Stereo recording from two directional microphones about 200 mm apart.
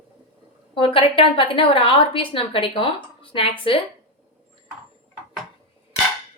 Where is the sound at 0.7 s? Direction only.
25° left (ahead or behind).